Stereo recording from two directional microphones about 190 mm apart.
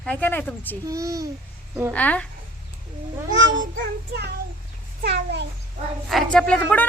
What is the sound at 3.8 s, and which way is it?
Music, 60° right (ahead or behind).